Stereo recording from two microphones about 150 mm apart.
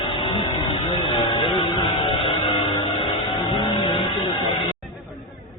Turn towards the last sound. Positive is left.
turn(degrees=35)  # may be behind; listen again after turning